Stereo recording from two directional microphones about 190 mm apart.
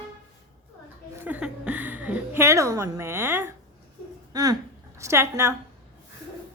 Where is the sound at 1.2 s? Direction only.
5° right (ahead or behind).